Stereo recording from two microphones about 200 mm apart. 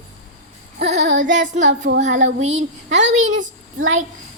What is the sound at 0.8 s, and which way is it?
Music, 35° right (ahead or behind).